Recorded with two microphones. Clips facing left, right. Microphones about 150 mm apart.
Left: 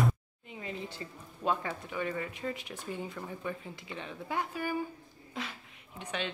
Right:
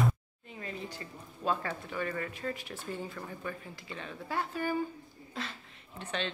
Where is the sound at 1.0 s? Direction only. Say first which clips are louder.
Left 1 dB; 20° left (ahead or behind).